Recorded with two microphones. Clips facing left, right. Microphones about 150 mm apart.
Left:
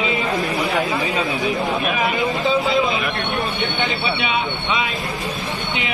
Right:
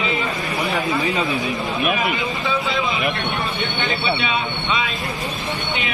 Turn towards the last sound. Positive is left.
turn(degrees=20)  # may be behind; listen again after turning